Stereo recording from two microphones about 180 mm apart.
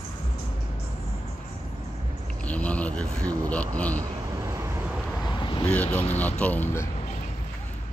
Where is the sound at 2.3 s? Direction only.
5° left (ahead or behind).